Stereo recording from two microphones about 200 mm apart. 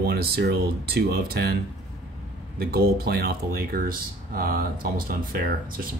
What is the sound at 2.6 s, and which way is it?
Speech, 50° right (ahead or behind).